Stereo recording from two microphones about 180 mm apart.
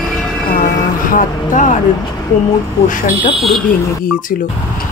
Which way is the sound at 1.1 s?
45° left (ahead or behind).